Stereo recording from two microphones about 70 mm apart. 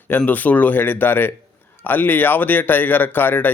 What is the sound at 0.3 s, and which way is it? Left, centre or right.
Speech, left.